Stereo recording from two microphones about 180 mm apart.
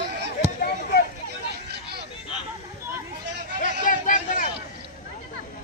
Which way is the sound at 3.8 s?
45° left (ahead or behind).